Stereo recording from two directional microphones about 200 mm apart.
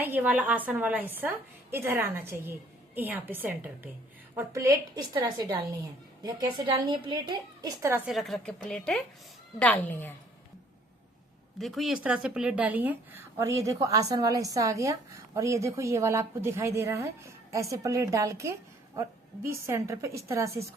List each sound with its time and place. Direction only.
0.0 s a woman's voice: 10° right (ahead or behind); by 10.1 s 10° left (ahead or behind)
11.6 s a woman's voice: centre (ahead or behind)